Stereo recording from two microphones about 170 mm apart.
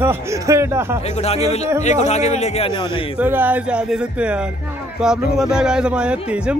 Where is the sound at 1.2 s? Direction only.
40° left (ahead or behind).